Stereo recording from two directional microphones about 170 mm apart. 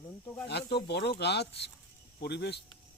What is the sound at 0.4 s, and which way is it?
Speech, 75° left (ahead or behind).